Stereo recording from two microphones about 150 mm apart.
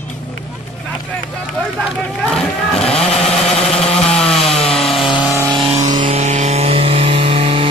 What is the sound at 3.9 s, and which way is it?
Chainsaw, 5° left (ahead or behind).